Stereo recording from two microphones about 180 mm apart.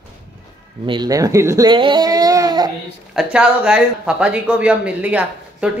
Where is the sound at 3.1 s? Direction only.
5° right (ahead or behind).